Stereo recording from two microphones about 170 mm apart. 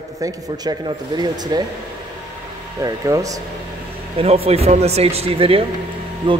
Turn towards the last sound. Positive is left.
turn(degrees=-30)  # may be behind; listen again after turning